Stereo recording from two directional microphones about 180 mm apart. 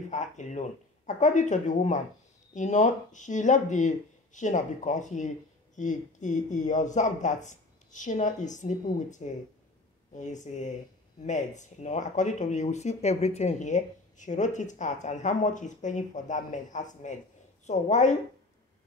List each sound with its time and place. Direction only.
0.1 s speech: 40° left (ahead or behind)